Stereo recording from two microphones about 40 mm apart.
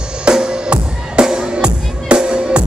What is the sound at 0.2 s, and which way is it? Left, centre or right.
Music, right.